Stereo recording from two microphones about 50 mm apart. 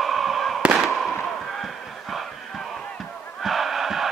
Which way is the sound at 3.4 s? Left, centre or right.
Centre.